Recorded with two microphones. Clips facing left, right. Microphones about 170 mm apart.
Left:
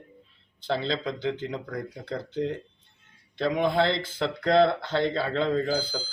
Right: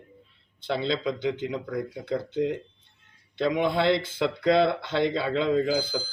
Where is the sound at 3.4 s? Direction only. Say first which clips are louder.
Even; centre (ahead or behind).